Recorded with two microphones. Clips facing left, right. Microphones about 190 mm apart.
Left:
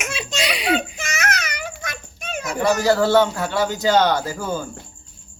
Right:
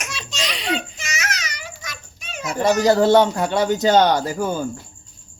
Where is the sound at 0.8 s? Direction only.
55° left (ahead or behind).